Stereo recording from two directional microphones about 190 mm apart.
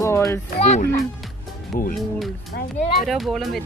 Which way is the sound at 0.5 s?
35° left (ahead or behind).